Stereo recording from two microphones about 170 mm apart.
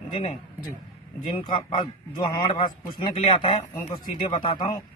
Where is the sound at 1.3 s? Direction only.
30° left (ahead or behind).